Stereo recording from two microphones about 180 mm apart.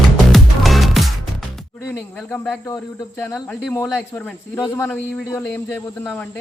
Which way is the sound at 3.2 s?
10° left (ahead or behind).